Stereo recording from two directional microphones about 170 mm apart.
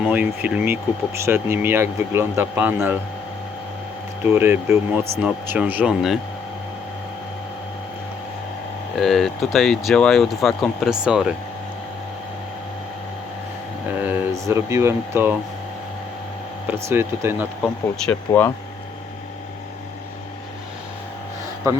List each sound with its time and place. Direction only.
0.1 s speech: 10° right (ahead or behind)
4.3 s speech: 15° right (ahead or behind)
9.0 s speech: centre (ahead or behind)
14.0 s speech: 10° right (ahead or behind)
16.7 s speech: 15° right (ahead or behind)
17.6 s speech: 5° left (ahead or behind)